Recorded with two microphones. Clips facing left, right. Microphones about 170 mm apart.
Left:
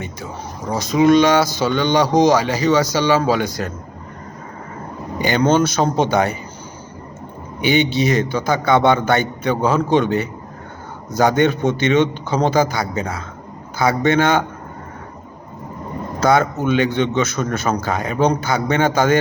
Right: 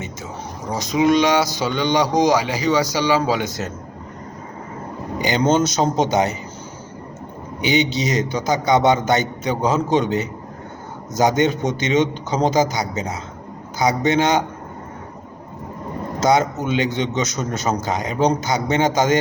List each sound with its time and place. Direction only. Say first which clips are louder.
0.7 s speech: left 3 dB; 15° right (ahead or behind)
5.2 s a man's voice: left 2 dB; 20° right (ahead or behind)
7.6 s a man's voice: left 3 dB; 20° right (ahead or behind)
16.2 s a man's voice: left 2 dB; 20° right (ahead or behind)